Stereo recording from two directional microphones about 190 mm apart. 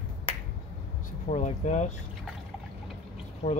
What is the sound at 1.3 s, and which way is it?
Speech, 40° left (ahead or behind).